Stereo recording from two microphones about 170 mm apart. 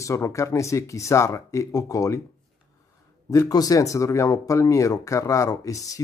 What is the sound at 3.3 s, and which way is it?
Speech, 20° left (ahead or behind).